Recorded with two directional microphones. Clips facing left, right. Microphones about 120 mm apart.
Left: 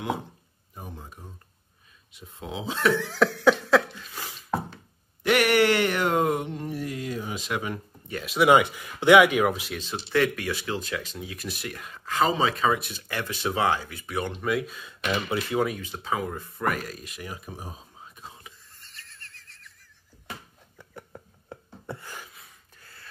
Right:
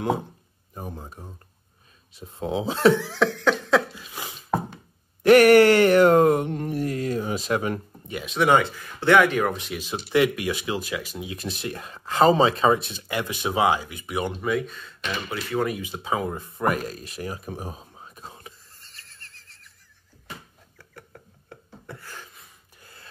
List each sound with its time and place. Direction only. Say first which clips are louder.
0.7 s speech: right 5 dB; 35° right (ahead or behind)
3.0 s a sound: even; centre (ahead or behind)
3.9 s a sound: right 2 dB; 15° right (ahead or behind)
5.2 s a sound: right 8 dB; 45° right (ahead or behind)
8.3 s speech: left 1 dB; 5° left (ahead or behind)
10.0 s speech: right 3 dB; 15° right (ahead or behind)
11.2 s speech: right 4 dB; 25° right (ahead or behind)
14.4 s speech: right 2 dB; 5° left (ahead or behind)
15.8 s speech: right 3 dB; 15° right (ahead or behind); by 17.4 s 35° right (ahead or behind)
17.5 s speech: right 5 dB; 55° right (ahead or behind)
18.1 s neigh: right 4 dB; 40° right (ahead or behind)
20.7 s a sound: left 3 dB; 20° left (ahead or behind)
22.8 s gasp: right 3 dB; 20° right (ahead or behind)